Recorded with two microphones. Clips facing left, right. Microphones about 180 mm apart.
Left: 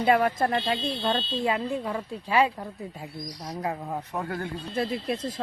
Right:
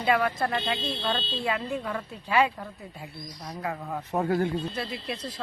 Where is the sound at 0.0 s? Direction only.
40° left (ahead or behind).